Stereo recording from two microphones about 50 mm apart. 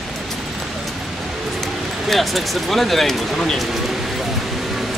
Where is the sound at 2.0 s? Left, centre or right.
Centre.